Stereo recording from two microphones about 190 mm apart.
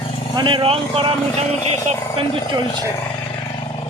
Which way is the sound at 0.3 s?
25° right (ahead or behind).